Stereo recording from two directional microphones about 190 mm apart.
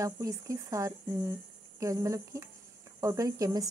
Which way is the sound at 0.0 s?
15° right (ahead or behind).